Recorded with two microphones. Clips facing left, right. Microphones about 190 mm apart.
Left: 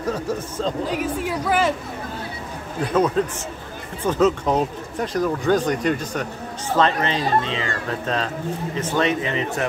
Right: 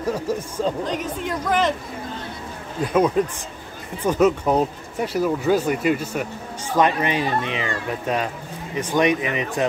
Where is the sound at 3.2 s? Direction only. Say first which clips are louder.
Right 1 dB; 10° right (ahead or behind).